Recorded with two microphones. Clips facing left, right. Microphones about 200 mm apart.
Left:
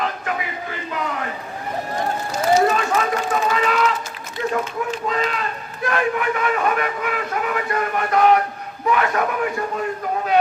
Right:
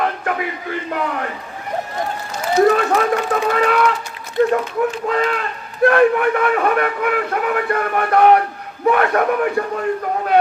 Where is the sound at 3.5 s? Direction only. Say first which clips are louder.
Right 6 dB; 55° right (ahead or behind).